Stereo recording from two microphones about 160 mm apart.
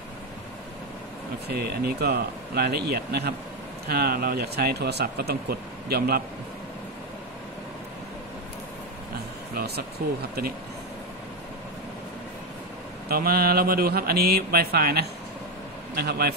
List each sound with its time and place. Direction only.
1.5 s speech: 80° right
10.0 s speech: 60° right (ahead or behind)
13.1 s speech: 70° right (ahead or behind)